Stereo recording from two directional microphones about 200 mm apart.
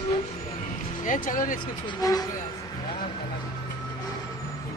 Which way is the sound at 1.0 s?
40° left (ahead or behind).